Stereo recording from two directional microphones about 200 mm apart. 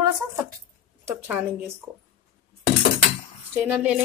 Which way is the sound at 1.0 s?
10° right (ahead or behind).